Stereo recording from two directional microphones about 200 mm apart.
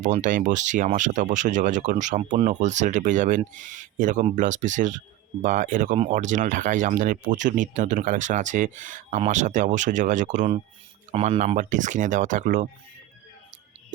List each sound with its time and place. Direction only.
0.0 s speech: 40° right (ahead or behind)